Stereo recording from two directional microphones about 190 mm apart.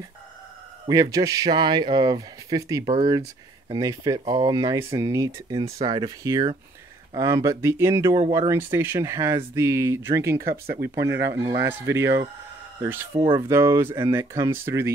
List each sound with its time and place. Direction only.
0.8 s a man's voice: 20° right (ahead or behind)
2.8 s speech: 30° right (ahead or behind)
3.1 s a man's voice: 20° right (ahead or behind)
10.4 s speech: 50° right (ahead or behind)
11.0 s speech: 15° right (ahead or behind)